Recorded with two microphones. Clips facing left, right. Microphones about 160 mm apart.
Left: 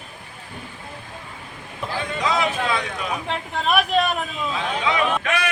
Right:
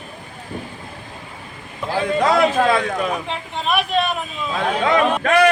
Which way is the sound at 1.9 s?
50° right (ahead or behind).